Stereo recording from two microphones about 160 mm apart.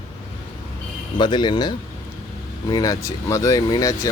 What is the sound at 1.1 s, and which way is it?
Speech, 30° left (ahead or behind).